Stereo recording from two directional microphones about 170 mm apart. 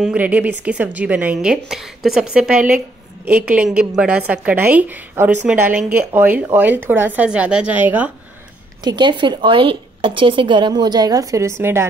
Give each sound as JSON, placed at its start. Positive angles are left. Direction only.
{"t": 0.0, "sound": "a woman's voice", "side_deg": -10}
{"t": 8.8, "sound": "a woman's voice", "side_deg": -25}